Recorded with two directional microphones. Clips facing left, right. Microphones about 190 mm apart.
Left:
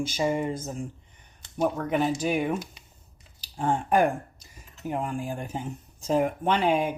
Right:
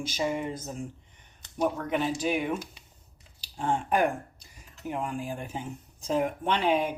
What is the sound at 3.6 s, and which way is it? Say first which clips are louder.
Speech: left 3 dB; 50° left (ahead or behind).